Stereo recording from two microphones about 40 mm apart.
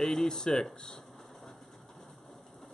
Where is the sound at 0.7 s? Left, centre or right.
Centre.